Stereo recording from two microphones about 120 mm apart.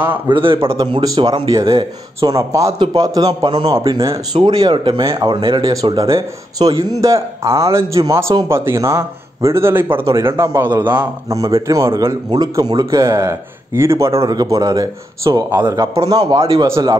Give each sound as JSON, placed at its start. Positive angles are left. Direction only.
{"t": 0.3, "sound": "a man's voice", "side_deg": -45}
{"t": 1.0, "sound": "speech", "side_deg": -35}
{"t": 16.3, "sound": "speech", "side_deg": -40}